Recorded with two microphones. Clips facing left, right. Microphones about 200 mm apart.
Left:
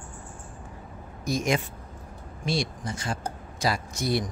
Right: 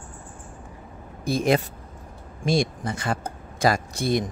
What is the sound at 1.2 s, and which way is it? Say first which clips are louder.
Speech: right 5 dB; 30° right (ahead or behind).